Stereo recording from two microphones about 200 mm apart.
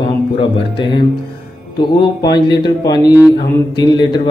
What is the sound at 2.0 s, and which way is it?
Speech, 20° left (ahead or behind).